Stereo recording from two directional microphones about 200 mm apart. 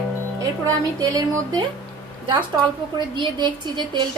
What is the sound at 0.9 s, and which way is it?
Speech, 20° right (ahead or behind).